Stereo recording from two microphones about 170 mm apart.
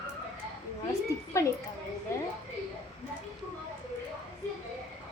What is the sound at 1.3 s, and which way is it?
Speech, 15° left (ahead or behind).